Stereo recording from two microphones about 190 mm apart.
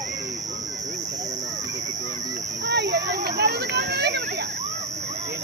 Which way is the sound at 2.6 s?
60° right (ahead or behind).